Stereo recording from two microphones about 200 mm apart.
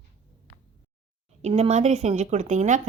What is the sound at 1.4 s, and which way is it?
Speech, 35° right (ahead or behind).